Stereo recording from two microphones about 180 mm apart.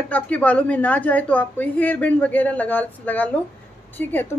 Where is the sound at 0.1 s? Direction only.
10° left (ahead or behind).